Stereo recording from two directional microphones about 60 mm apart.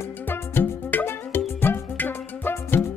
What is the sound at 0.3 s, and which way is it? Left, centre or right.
Music, left.